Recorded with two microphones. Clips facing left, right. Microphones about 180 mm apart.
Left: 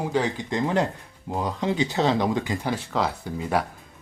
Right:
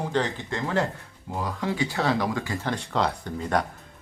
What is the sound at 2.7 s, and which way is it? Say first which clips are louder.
Speech: even; centre (ahead or behind).